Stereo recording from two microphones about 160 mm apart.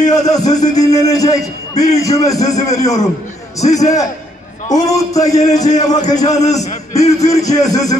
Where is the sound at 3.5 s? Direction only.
45° left (ahead or behind).